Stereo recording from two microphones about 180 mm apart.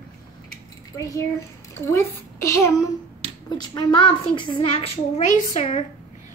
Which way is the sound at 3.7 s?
25° left (ahead or behind).